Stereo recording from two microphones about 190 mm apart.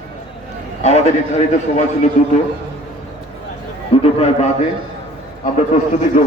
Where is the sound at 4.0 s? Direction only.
30° left (ahead or behind).